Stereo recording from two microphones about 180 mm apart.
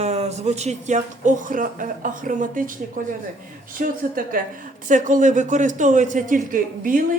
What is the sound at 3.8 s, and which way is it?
A man's voice, 50° right (ahead or behind).